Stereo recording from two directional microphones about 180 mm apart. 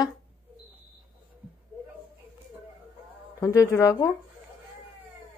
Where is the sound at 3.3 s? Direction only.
20° left (ahead or behind).